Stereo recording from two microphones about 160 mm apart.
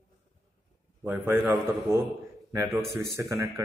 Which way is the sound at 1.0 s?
15° right (ahead or behind).